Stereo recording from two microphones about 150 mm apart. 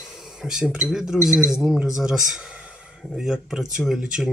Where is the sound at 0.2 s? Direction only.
Centre (ahead or behind).